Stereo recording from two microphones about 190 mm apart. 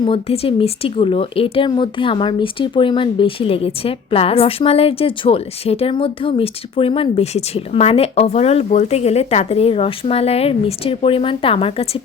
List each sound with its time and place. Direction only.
0.0 s speech: 30° left (ahead or behind)